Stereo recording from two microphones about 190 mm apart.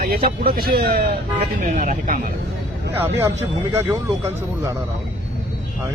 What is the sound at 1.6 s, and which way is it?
Speech, 40° right (ahead or behind).